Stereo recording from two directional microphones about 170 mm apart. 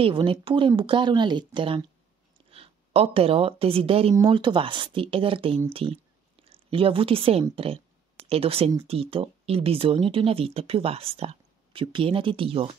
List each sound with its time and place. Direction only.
0.0 s a woman's voice: 30° right (ahead or behind)